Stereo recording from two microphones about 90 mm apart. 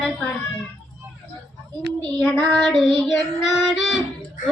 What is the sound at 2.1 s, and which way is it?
A child's voice, 10° left (ahead or behind).